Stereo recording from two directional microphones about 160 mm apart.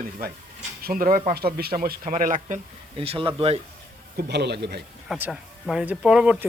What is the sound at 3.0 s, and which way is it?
Speech, 35° right (ahead or behind).